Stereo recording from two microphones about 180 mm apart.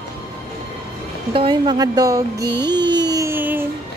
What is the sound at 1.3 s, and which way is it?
Speech, 30° right (ahead or behind).